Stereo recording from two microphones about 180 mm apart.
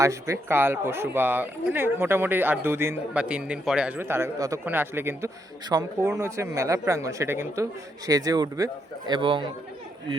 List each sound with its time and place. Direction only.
0.0 s speech: 15° right (ahead or behind)